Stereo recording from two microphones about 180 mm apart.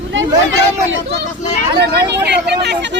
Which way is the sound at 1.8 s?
65° right (ahead or behind).